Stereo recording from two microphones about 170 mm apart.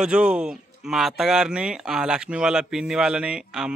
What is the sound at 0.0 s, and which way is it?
Speech, 5° right (ahead or behind).